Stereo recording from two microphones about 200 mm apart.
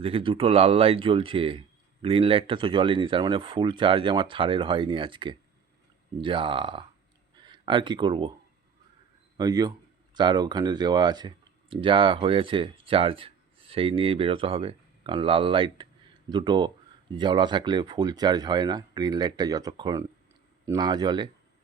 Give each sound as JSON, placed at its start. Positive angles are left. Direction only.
{"t": 0.0, "sound": "speech", "side_deg": -25}
{"t": 9.4, "sound": "speech", "side_deg": -20}